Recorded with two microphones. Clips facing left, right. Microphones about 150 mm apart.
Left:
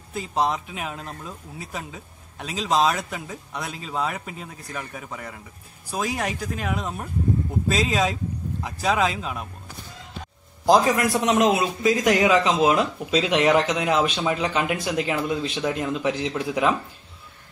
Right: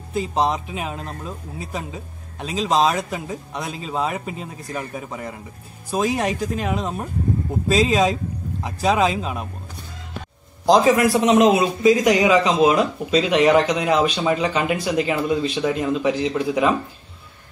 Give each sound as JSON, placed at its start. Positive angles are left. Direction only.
{"t": 0.1, "sound": "speech", "side_deg": -20}
{"t": 7.6, "sound": "speech", "side_deg": -15}
{"t": 10.6, "sound": "a man's voice", "side_deg": 0}